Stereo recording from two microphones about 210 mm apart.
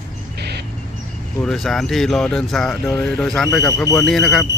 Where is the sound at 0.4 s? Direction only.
50° right (ahead or behind).